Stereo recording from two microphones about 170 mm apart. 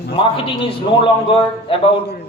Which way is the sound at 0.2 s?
30° left (ahead or behind).